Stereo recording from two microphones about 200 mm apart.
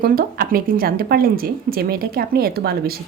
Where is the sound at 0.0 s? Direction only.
45° right (ahead or behind).